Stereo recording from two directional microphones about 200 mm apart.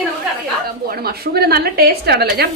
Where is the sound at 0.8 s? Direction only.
50° right (ahead or behind).